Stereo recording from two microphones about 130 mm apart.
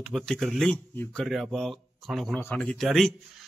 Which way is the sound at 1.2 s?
Centre (ahead or behind).